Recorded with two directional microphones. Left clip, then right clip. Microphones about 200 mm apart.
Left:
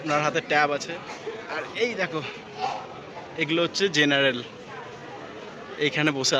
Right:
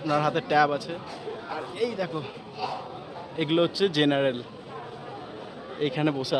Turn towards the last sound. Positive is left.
turn(degrees=-10)  # may be behind; listen again after turning